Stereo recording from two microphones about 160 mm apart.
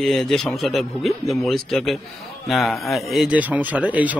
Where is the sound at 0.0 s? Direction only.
Centre (ahead or behind).